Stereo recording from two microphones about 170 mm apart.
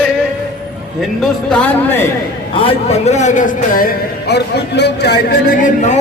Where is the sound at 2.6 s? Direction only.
35° left (ahead or behind).